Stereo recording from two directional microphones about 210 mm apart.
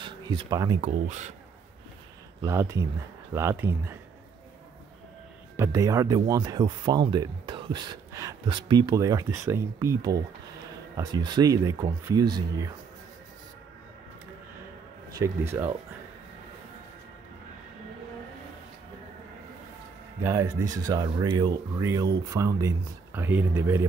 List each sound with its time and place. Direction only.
0.0 s speech: 20° right (ahead or behind)
0.7 s speech: 35° right (ahead or behind)
2.4 s speech: 15° right (ahead or behind)
5.6 s speech: 15° right (ahead or behind)
15.1 s speech: 10° right (ahead or behind)
20.2 s speech: 15° right (ahead or behind)